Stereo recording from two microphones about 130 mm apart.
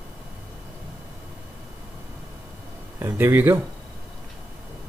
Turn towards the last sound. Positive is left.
turn(degrees=-15)  # may be behind; listen again after turning